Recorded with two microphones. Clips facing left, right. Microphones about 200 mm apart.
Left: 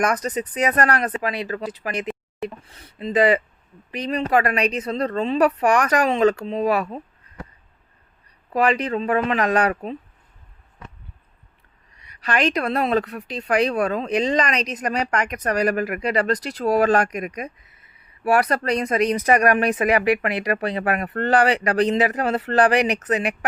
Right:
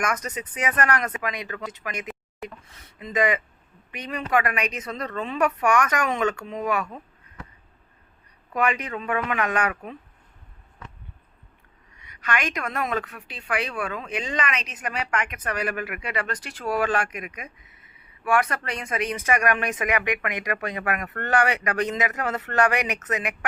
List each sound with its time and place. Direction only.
0.0 s a woman's voice: 35° left (ahead or behind)
8.5 s a woman's voice: 35° left (ahead or behind)
11.9 s a woman's voice: 35° left (ahead or behind)